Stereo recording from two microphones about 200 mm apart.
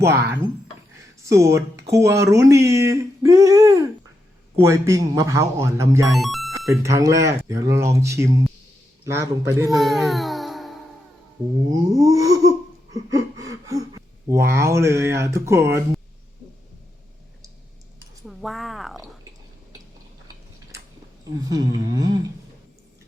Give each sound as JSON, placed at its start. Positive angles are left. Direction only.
{"t": 0.1, "sound": "speech", "side_deg": -55}
{"t": 1.2, "sound": "speech", "side_deg": -15}
{"t": 6.1, "sound": "speech", "side_deg": 0}
{"t": 6.7, "sound": "speech", "side_deg": -15}
{"t": 9.7, "sound": "music", "side_deg": 0}
{"t": 11.9, "sound": "laughter", "side_deg": -15}
{"t": 14.4, "sound": "speech", "side_deg": -15}
{"t": 18.3, "sound": "speech", "side_deg": 0}
{"t": 21.5, "sound": "a sound", "side_deg": -20}